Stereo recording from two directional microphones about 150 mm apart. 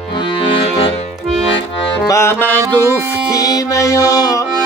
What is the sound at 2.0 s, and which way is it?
Music, 15° left (ahead or behind).